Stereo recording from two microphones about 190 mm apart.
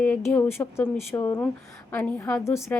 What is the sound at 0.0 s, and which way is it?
A woman's voice, 10° left (ahead or behind).